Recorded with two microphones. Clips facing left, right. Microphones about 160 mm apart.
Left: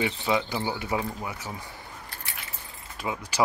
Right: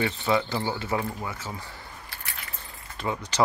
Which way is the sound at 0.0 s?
10° left (ahead or behind).